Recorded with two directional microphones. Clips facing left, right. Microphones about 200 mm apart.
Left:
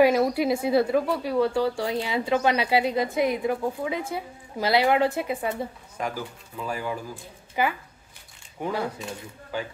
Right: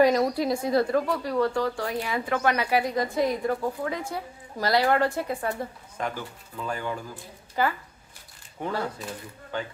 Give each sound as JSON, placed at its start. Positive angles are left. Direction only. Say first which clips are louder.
{"t": 0.0, "sound": "a woman's voice", "louder": "left 1 dB", "side_deg": 5}
{"t": 1.9, "sound": "speech", "louder": "left 3 dB", "side_deg": 25}
{"t": 5.6, "sound": "a woman's voice", "louder": "left 1 dB", "side_deg": 10}